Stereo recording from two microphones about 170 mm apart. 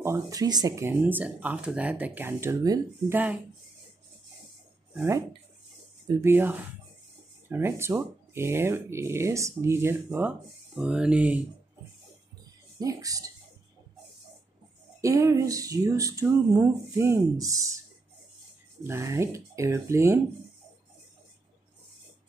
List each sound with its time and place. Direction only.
0.0 s speech: 20° right (ahead or behind)
6.2 s speech: 10° right (ahead or behind)
12.7 s speech: 20° right (ahead or behind)
15.0 s speech: 15° right (ahead or behind)
18.9 s speech: 15° right (ahead or behind)